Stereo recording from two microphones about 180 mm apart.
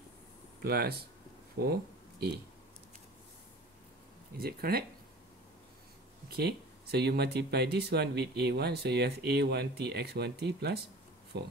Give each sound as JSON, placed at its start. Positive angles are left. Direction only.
{"t": 0.6, "sound": "speech", "side_deg": -60}
{"t": 4.4, "sound": "speech", "side_deg": -60}
{"t": 6.3, "sound": "speech", "side_deg": -65}